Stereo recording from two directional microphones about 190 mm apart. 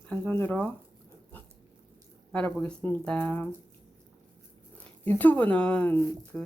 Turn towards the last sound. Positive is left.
turn(degrees=5)  # may be behind; listen again after turning